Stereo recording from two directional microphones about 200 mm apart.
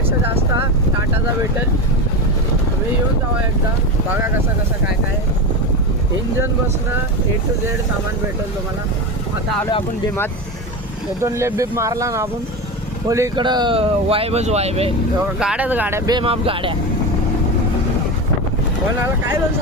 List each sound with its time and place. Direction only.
11.2 s speech: 15° right (ahead or behind); by 14.9 s 30° right (ahead or behind)
15.4 s speech: 5° right (ahead or behind); by 16.7 s 25° right (ahead or behind)